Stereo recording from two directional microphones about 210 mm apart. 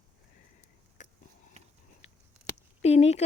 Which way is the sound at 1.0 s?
35° left (ahead or behind).